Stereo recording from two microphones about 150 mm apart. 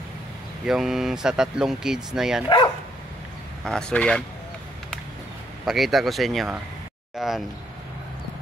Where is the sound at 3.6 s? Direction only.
5° left (ahead or behind).